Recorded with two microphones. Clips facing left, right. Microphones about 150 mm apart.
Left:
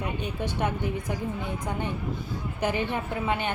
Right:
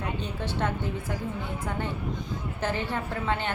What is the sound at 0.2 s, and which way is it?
Speech, 15° left (ahead or behind).